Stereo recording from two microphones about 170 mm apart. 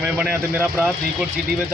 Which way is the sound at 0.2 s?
10° right (ahead or behind).